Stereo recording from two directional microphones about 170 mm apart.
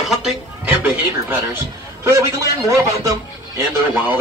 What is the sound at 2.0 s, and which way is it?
Speech, 15° right (ahead or behind).